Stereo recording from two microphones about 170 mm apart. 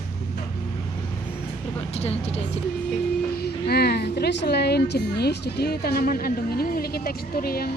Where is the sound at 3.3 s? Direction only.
70° left (ahead or behind).